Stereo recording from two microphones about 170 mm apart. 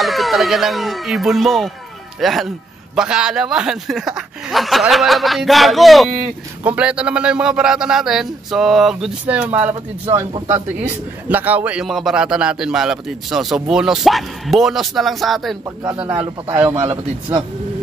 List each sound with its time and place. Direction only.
0.0 s speech: centre (ahead or behind)
15.8 s speech: 20° right (ahead or behind)
16.2 s speech: 10° right (ahead or behind)
16.9 s speech: 25° right (ahead or behind)